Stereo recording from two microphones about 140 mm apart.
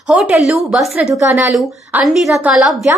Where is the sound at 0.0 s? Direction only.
5° right (ahead or behind).